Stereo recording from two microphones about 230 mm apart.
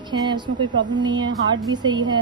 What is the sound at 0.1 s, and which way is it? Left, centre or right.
A woman's voice, centre.